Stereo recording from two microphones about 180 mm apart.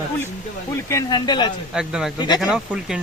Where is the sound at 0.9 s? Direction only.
20° left (ahead or behind).